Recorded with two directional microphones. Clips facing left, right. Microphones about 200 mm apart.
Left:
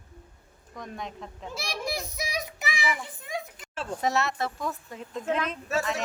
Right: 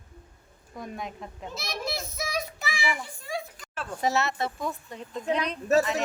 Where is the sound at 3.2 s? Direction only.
20° left (ahead or behind).